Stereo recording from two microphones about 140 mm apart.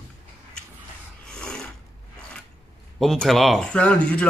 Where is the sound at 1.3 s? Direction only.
5° left (ahead or behind).